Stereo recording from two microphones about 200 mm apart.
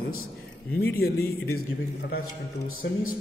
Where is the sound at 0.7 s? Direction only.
50° left (ahead or behind).